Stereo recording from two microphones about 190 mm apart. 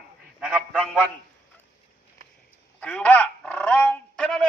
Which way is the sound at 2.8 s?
5° left (ahead or behind).